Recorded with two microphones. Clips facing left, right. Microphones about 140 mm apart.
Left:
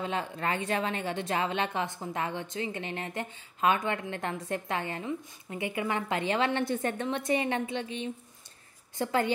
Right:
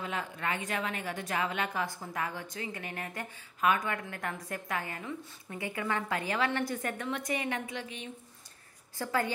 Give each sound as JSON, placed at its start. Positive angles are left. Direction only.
{"t": 0.0, "sound": "a woman's voice", "side_deg": 30}